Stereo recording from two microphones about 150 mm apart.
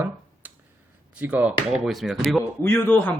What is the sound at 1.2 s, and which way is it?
Speech, 10° right (ahead or behind).